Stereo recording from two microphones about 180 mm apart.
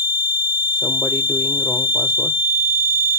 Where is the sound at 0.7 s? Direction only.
Centre (ahead or behind).